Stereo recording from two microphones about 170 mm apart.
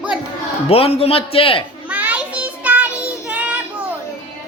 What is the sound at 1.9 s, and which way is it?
Child singing, 10° right (ahead or behind).